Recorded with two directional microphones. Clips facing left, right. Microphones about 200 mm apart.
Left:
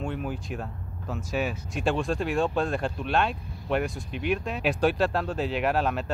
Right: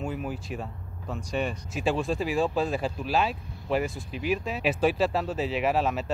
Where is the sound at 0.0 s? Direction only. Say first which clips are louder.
Left 1 dB; centre (ahead or behind).